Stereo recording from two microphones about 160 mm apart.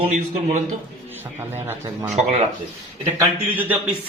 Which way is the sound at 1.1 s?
15° right (ahead or behind).